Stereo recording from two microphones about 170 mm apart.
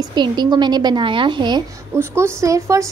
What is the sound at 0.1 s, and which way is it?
A woman's voice, 25° right (ahead or behind).